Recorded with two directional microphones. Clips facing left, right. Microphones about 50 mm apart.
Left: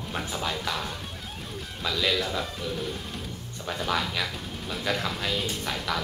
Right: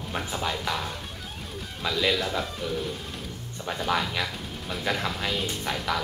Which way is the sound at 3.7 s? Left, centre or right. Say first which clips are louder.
Right 1 dB; centre.